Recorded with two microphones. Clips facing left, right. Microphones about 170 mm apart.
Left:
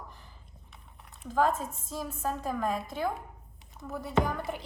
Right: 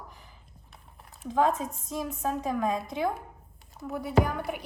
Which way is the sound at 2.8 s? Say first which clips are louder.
Right 3 dB; 20° right (ahead or behind).